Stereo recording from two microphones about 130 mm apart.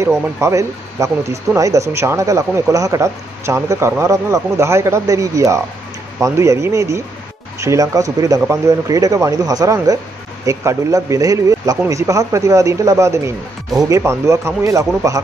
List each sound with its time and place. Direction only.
0.0 s speech: 20° right (ahead or behind)